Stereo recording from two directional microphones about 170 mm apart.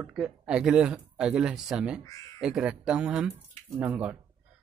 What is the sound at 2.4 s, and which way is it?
A man's voice, 5° right (ahead or behind).